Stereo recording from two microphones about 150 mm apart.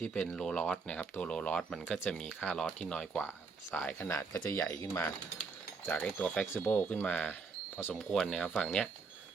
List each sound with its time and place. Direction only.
0.0 s speech: 5° left (ahead or behind)
4.7 s mechanisms: 20° left (ahead or behind)
5.8 s speech: 10° left (ahead or behind)